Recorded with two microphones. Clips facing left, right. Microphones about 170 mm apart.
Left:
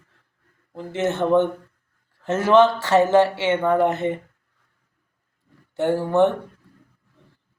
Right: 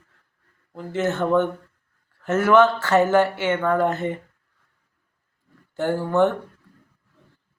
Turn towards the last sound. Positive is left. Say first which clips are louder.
# left 2 dB
turn(degrees=20)  # may be behind; listen again after turning